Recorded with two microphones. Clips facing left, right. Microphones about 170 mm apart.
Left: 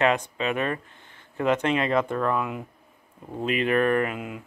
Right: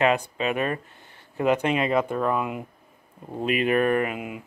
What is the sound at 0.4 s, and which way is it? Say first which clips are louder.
Speech: right 1 dB; 10° right (ahead or behind).